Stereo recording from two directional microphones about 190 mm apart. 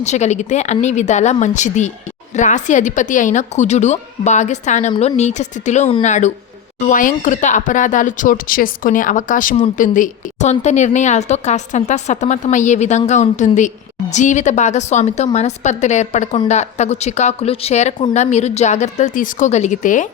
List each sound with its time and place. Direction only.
0.0 s a woman's voice: 35° left (ahead or behind)